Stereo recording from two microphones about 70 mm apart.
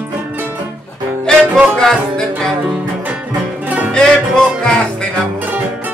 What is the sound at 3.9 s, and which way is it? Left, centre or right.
Music, centre.